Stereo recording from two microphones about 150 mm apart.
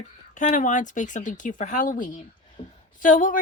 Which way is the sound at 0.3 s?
60° left (ahead or behind).